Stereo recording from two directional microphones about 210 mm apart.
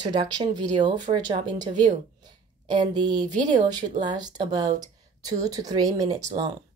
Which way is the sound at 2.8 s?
20° right (ahead or behind).